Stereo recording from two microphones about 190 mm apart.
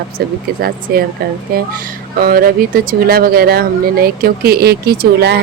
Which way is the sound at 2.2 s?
50° right (ahead or behind).